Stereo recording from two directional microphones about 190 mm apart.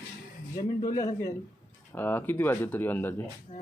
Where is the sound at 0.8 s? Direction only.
20° left (ahead or behind).